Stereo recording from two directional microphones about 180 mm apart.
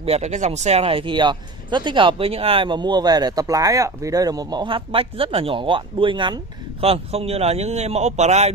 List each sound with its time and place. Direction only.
0.0 s speech: 35° right (ahead or behind)